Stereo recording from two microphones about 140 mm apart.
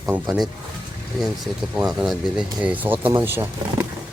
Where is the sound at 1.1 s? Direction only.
Centre (ahead or behind).